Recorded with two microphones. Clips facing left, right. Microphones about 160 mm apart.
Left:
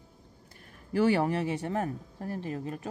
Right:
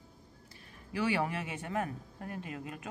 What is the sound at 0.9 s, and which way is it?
Speech, 40° left (ahead or behind).